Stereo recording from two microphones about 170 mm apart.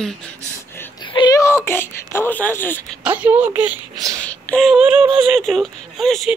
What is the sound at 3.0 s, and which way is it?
Speech, 10° right (ahead or behind).